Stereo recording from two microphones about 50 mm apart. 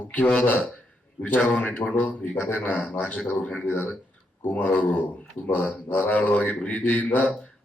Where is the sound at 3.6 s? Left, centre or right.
Left.